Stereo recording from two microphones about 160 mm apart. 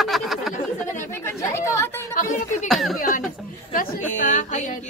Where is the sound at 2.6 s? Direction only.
Centre (ahead or behind).